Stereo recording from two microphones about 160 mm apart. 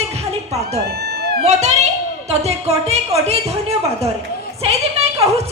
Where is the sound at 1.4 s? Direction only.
45° right (ahead or behind).